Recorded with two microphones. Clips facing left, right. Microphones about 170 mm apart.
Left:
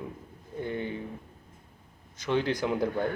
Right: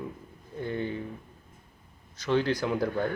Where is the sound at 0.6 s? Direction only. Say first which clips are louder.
Right 1 dB; 15° left (ahead or behind).